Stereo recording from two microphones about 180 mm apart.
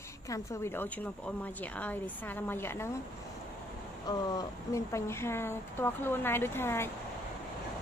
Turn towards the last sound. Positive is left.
turn(degrees=15)  # may be behind; listen again after turning